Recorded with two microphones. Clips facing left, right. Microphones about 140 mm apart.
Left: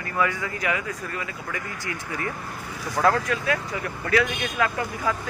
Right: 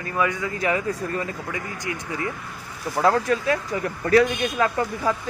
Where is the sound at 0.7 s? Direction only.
35° right (ahead or behind).